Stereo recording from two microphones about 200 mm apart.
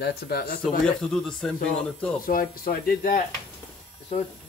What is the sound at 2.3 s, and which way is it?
Speech, 45° left (ahead or behind).